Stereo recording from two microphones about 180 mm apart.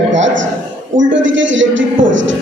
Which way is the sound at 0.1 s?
90° right.